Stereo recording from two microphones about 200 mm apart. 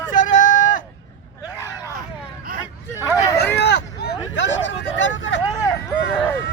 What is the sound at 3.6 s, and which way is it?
Hubbub, 60° left (ahead or behind).